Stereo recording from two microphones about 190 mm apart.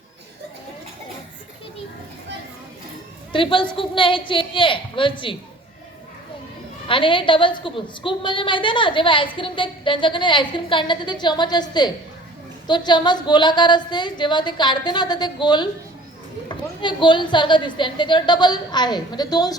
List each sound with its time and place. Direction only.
3.3 s a woman's voice: 25° left (ahead or behind)
6.8 s a woman's voice: 25° left (ahead or behind)